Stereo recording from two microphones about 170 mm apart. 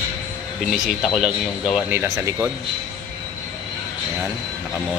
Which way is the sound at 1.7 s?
10° right (ahead or behind).